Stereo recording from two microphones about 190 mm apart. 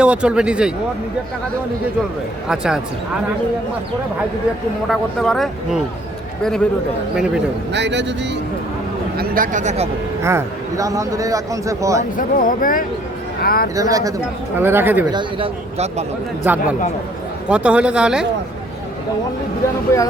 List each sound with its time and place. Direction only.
0.0 s speech: 5° right (ahead or behind)
2.5 s speech: 5° right (ahead or behind)
4.9 s speech: centre (ahead or behind)
7.7 s speech: 65° right (ahead or behind)
9.1 s speech: 45° right (ahead or behind)
10.2 s a man's voice: 15° right (ahead or behind)
12.1 s speech: 45° left (ahead or behind)
13.7 s a man's voice: 20° right (ahead or behind)
15.1 s speech: 25° right (ahead or behind)
16.4 s a man's voice: 10° right (ahead or behind)
19.9 s speech: 15° left (ahead or behind)